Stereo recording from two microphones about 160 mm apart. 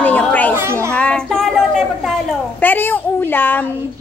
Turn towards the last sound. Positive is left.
turn(degrees=10)  # may be behind; listen again after turning